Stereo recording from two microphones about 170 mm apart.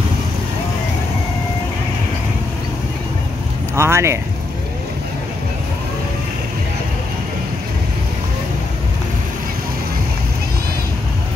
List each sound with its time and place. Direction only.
3.7 s speech: 15° right (ahead or behind)